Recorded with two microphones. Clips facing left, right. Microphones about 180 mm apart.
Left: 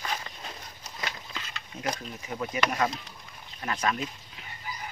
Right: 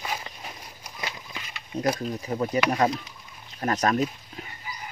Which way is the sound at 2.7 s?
35° right (ahead or behind).